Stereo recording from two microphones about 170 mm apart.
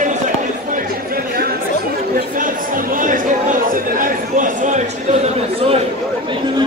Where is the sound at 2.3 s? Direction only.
50° right (ahead or behind).